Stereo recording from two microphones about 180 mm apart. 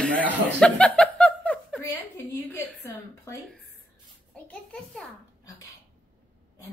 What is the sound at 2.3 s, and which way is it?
A woman's voice, 15° left (ahead or behind).